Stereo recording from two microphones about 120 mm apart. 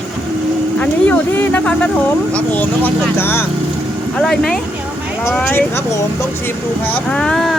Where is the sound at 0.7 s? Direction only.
15° left (ahead or behind).